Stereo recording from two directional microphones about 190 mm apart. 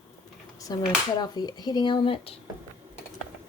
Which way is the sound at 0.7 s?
20° left (ahead or behind).